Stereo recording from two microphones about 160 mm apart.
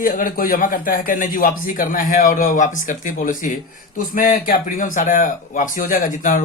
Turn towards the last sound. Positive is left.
turn(degrees=55)  # may be behind; listen again after turning